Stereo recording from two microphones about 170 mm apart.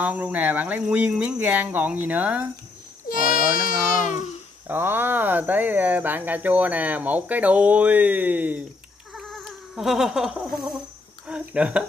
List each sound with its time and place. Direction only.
0.0 s speech: 10° right (ahead or behind)
3.6 s speech: 45° left (ahead or behind)
4.6 s speech: 10° right (ahead or behind)
9.1 s a sound: centre (ahead or behind)
11.2 s speech: 5° right (ahead or behind)